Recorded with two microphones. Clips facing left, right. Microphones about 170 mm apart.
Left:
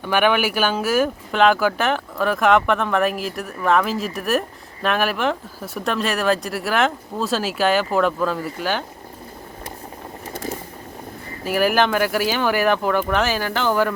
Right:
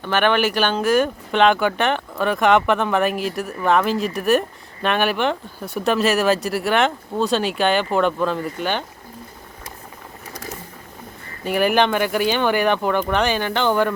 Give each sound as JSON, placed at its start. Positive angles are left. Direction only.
{"t": 0.0, "sound": "speech", "side_deg": 10}
{"t": 10.3, "sound": "a sound", "side_deg": 30}
{"t": 11.4, "sound": "speech", "side_deg": 0}